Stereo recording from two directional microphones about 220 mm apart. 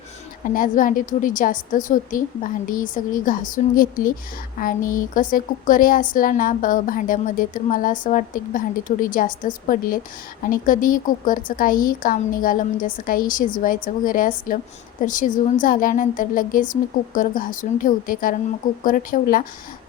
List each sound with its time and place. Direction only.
0.4 s a woman's voice: 40° left (ahead or behind)